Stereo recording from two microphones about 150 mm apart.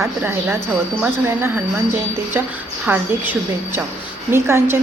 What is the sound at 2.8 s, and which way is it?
Speech, 10° right (ahead or behind).